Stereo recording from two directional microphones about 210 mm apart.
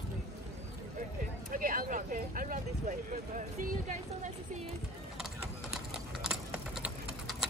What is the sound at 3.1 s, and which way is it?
Speech, 40° right (ahead or behind).